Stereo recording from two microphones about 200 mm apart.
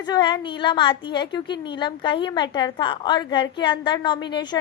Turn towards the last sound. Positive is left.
turn(degrees=20)  # may be behind; listen again after turning